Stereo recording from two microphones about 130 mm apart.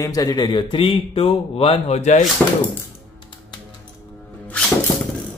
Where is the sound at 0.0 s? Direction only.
30° left (ahead or behind); by 2.2 s 60° left (ahead or behind).